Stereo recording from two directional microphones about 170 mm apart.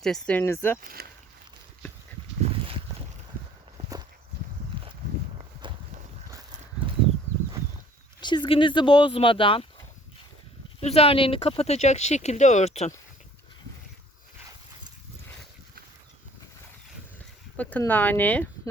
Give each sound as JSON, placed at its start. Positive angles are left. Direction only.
{"t": 0.0, "sound": "speech", "side_deg": 5}
{"t": 0.8, "sound": "speech", "side_deg": -60}
{"t": 3.8, "sound": "walk", "side_deg": -40}
{"t": 5.6, "sound": "walk", "side_deg": -30}
{"t": 6.3, "sound": "a sound", "side_deg": -25}
{"t": 8.2, "sound": "speech", "side_deg": 25}
{"t": 10.8, "sound": "speech", "side_deg": 35}
{"t": 17.6, "sound": "speech", "side_deg": 10}